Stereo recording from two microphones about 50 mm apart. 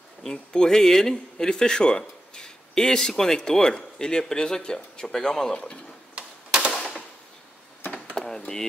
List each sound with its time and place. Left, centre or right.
0.2 s speech: centre
6.1 s typewriter: right
6.7 s machine gun: centre